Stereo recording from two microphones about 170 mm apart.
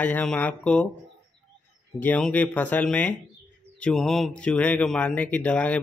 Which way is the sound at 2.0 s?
10° left (ahead or behind).